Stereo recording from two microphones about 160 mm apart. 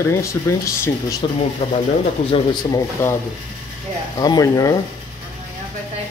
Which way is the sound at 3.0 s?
15° left (ahead or behind).